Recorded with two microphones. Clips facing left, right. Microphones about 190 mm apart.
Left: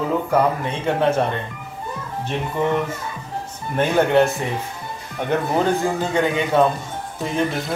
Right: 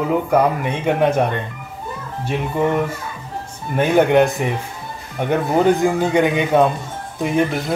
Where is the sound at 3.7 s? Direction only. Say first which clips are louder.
Right 3 dB; 15° right (ahead or behind).